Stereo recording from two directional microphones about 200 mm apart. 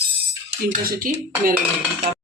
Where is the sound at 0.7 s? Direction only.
45° right (ahead or behind).